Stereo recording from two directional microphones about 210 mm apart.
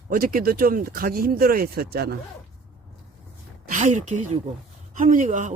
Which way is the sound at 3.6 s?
35° right (ahead or behind).